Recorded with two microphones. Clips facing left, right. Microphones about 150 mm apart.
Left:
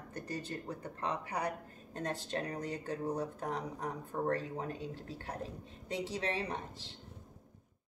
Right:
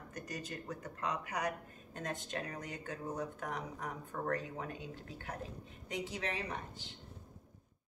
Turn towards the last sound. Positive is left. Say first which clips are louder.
# left 3 dB
turn(degrees=30)  # may be behind; listen again after turning